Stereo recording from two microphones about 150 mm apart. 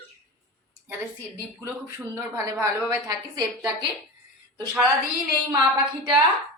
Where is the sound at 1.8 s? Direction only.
20° right (ahead or behind).